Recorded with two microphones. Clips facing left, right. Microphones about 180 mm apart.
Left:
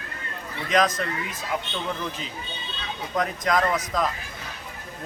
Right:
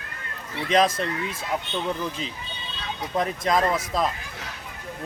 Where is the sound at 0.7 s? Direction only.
30° right (ahead or behind).